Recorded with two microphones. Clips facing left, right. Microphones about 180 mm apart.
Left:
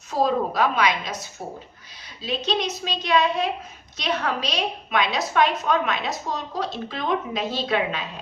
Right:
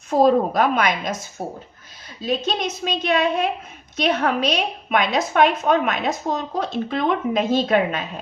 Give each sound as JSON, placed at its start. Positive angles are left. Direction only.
{"t": 0.1, "sound": "a woman's voice", "side_deg": -50}
{"t": 2.2, "sound": "a woman's voice", "side_deg": -50}